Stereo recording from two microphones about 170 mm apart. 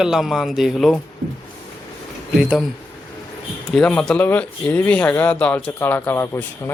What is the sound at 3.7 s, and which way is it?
Speech, 5° left (ahead or behind).